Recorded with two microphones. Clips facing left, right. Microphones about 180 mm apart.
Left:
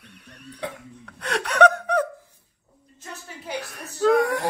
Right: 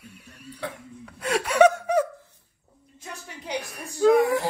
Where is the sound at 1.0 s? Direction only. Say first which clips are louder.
Right 2 dB; 5° right (ahead or behind).